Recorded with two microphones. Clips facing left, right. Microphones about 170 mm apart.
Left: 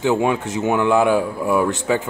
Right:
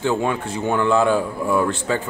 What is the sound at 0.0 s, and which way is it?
Speech, 15° left (ahead or behind).